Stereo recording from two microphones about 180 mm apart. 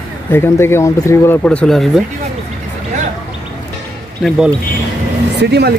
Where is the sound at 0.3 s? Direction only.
15° left (ahead or behind).